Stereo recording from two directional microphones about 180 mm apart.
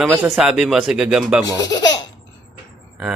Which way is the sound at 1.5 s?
20° left (ahead or behind).